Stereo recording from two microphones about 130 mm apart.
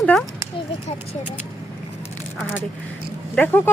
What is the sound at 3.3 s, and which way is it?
Speech, 15° left (ahead or behind).